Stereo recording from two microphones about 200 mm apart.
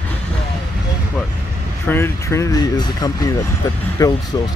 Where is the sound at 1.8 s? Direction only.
10° left (ahead or behind).